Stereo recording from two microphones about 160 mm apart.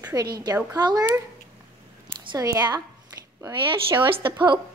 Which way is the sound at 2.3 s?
25° right (ahead or behind).